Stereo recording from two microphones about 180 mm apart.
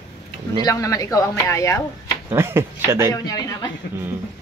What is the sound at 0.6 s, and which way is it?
Speech, 20° left (ahead or behind).